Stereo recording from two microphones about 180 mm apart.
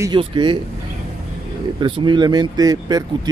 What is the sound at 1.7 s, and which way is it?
Speech, 25° right (ahead or behind).